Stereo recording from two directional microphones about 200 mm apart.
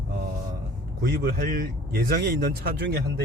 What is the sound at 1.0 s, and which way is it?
Speech, 50° right (ahead or behind).